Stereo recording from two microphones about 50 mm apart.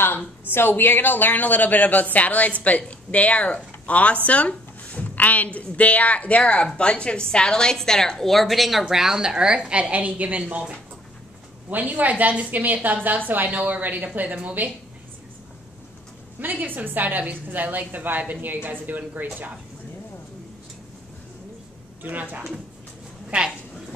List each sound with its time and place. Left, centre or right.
0.5 s a woman's voice: left; by 10.6 s right
11.7 s a woman's voice: right
16.3 s a woman's voice: right
22.0 s a woman's voice: right